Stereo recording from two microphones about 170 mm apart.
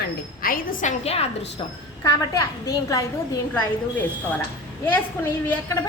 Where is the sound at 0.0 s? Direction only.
55° left (ahead or behind); by 1.5 s 40° left (ahead or behind).